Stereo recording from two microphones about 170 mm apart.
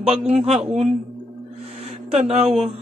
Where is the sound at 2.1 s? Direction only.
40° right (ahead or behind).